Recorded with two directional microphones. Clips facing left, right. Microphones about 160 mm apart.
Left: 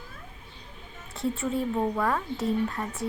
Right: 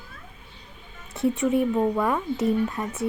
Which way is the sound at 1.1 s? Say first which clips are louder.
Right 6 dB; 20° right (ahead or behind).